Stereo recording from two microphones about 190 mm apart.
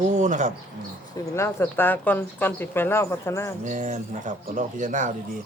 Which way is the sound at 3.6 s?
40° right (ahead or behind).